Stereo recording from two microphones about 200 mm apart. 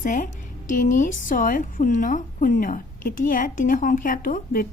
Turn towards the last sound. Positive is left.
turn(degrees=45)  # may be behind; listen again after turning